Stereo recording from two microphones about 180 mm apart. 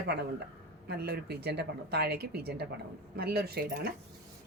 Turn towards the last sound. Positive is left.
turn(degrees=-55)  # may be behind; listen again after turning